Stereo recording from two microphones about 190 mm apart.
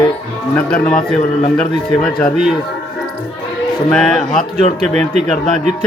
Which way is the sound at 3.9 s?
5° left (ahead or behind).